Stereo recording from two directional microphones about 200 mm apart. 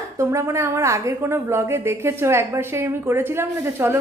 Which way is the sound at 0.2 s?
15° right (ahead or behind).